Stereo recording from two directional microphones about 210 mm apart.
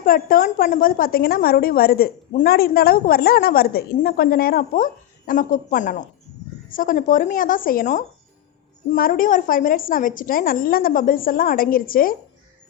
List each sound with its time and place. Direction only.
0.0 s a woman's voice: 45° left (ahead or behind)